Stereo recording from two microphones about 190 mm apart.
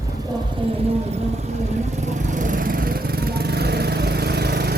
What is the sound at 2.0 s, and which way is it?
Lawn mower, 40° right (ahead or behind).